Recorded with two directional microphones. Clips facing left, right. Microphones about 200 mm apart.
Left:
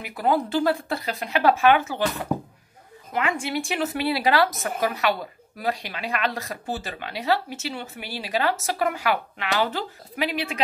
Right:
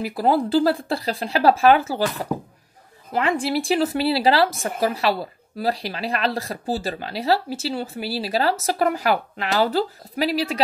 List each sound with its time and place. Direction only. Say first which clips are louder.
0.0 s speech: right 3 dB; 35° right (ahead or behind)